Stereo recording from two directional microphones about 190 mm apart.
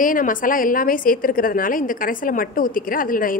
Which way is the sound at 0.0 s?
45° left (ahead or behind).